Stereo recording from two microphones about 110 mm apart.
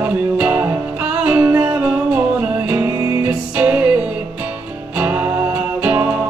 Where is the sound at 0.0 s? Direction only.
15° right (ahead or behind).